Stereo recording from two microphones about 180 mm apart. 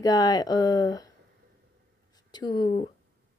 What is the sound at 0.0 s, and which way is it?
Speech, 20° left (ahead or behind).